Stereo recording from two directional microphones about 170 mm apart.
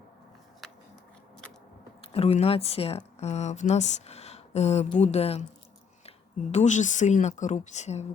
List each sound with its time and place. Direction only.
2.0 s speech: 35° left (ahead or behind)